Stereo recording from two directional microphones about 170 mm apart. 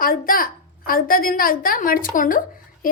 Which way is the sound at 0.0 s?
55° left (ahead or behind).